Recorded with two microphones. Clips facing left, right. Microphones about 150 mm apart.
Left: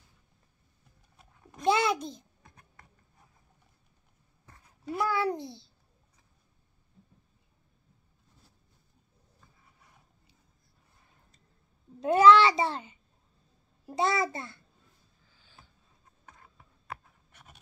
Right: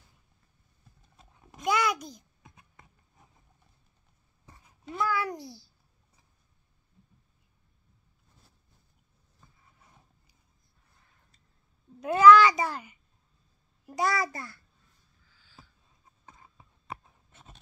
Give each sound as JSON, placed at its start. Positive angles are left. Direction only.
{"t": 1.6, "sound": "a child's voice", "side_deg": 25}
{"t": 2.4, "sound": "a sound", "side_deg": -10}
{"t": 4.8, "sound": "a child's voice", "side_deg": 30}
{"t": 12.0, "sound": "a child's voice", "side_deg": 25}
{"t": 16.3, "sound": "writing", "side_deg": -20}